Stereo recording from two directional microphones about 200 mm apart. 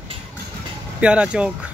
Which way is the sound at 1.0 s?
5° right (ahead or behind).